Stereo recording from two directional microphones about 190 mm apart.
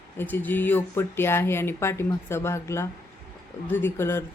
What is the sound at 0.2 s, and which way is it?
Speech, 10° left (ahead or behind).